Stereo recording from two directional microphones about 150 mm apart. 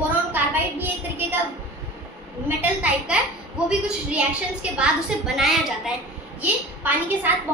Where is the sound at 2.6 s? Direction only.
10° right (ahead or behind).